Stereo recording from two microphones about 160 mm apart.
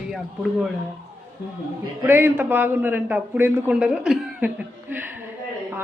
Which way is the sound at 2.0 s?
15° right (ahead or behind).